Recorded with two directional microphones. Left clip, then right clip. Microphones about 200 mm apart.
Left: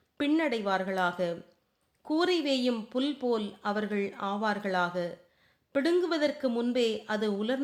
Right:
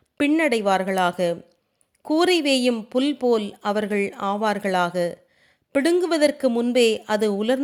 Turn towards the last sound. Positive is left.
turn(degrees=-35)  # may be behind; listen again after turning